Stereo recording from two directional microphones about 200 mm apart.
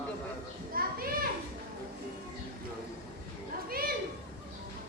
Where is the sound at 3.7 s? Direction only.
50° right (ahead or behind).